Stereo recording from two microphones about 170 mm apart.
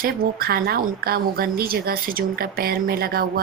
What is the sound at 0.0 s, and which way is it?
A woman's voice, 60° right (ahead or behind).